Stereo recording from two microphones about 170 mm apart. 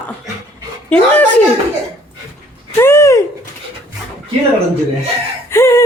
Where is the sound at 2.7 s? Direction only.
15° left (ahead or behind).